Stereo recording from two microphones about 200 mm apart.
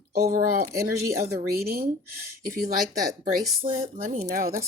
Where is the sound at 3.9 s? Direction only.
35° right (ahead or behind).